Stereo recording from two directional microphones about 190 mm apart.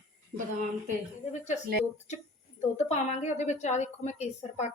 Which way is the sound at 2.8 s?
35° left (ahead or behind).